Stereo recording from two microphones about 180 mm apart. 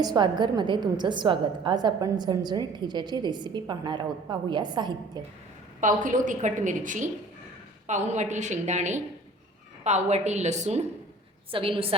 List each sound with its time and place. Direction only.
0.0 s a woman's voice: 25° right (ahead or behind)
5.8 s a woman's voice: 45° right (ahead or behind)